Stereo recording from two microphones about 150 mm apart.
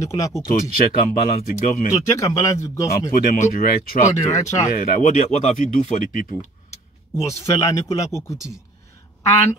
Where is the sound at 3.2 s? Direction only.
55° left (ahead or behind).